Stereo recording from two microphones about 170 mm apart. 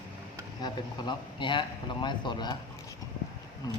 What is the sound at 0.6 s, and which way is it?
A man's voice, 25° left (ahead or behind).